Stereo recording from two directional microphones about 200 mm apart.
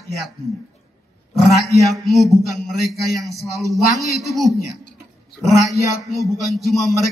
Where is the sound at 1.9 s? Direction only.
Centre (ahead or behind).